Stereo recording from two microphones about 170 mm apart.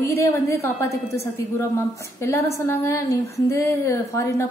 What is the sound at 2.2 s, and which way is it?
A woman's voice, 15° left (ahead or behind).